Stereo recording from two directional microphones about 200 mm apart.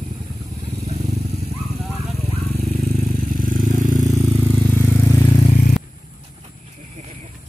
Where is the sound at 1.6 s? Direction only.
Centre (ahead or behind).